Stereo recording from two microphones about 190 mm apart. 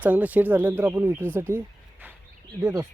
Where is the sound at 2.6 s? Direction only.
15° right (ahead or behind).